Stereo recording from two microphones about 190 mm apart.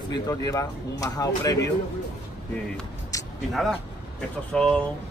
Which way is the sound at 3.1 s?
15° left (ahead or behind).